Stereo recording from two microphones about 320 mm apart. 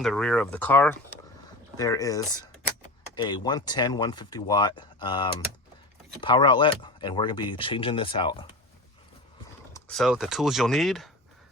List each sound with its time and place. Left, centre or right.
0.0 s speech: centre
9.7 s speech: centre